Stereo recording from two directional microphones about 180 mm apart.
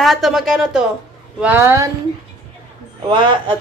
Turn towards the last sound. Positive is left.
turn(degrees=-25)  # may be behind; listen again after turning